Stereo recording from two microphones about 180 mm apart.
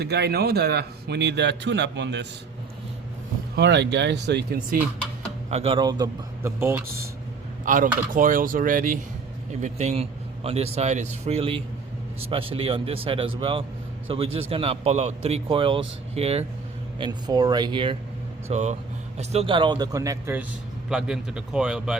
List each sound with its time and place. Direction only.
0.0 s a man's voice: 65° right (ahead or behind)
3.5 s a man's voice: 75° right (ahead or behind)
5.5 s speech: 35° right (ahead or behind); by 6.8 s 15° right (ahead or behind)
7.6 s a man's voice: 45° right (ahead or behind)
17.0 s speech: 25° right (ahead or behind)
18.4 s speech: 40° right (ahead or behind); by 20.4 s 15° right (ahead or behind)
20.9 s a man's voice: 5° right (ahead or behind)